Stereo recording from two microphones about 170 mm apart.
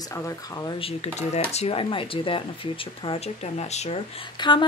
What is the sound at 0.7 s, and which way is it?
Speech, 35° left (ahead or behind).